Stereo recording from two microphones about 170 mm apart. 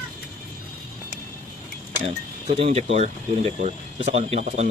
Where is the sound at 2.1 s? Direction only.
40° right (ahead or behind).